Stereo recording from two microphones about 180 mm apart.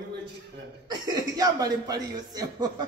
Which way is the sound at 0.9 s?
20° right (ahead or behind).